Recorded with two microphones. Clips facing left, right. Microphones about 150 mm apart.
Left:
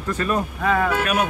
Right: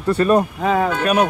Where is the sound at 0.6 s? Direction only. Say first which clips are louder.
Right 3 dB; 20° right (ahead or behind).